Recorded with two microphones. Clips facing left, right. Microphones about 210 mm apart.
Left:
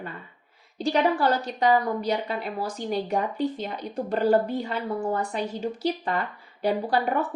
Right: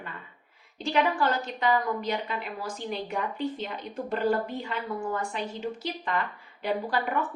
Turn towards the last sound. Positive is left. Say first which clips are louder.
# left 4 dB
turn(degrees=40)  # may be behind; listen again after turning